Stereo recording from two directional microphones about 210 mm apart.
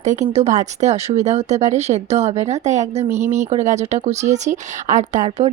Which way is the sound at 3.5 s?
35° right (ahead or behind).